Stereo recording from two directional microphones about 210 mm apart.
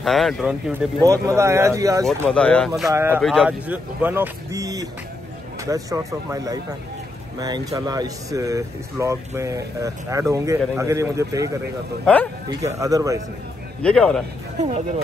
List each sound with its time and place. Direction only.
0.0 s speech: centre (ahead or behind); by 2.0 s 15° right (ahead or behind)
2.2 s speech: 5° left (ahead or behind)
2.9 s speech: 10° right (ahead or behind)
3.2 s speech: centre (ahead or behind); by 13.2 s 15° right (ahead or behind)
13.8 s speech: 5° left (ahead or behind)